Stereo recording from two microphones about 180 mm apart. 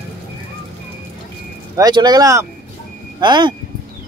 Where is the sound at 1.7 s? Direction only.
20° right (ahead or behind).